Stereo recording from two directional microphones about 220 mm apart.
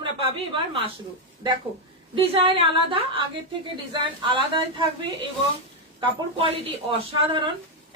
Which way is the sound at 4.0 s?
20° right (ahead or behind).